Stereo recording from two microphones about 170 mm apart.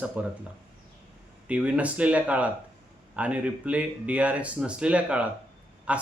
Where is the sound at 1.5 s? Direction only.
5° right (ahead or behind).